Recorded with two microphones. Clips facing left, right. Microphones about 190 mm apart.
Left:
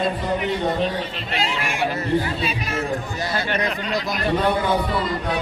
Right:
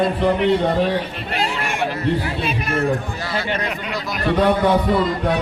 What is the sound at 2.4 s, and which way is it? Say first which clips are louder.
Speech: right 4 dB; 55° right (ahead or behind).